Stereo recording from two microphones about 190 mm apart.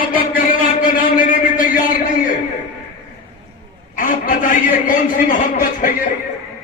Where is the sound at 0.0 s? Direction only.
45° left (ahead or behind).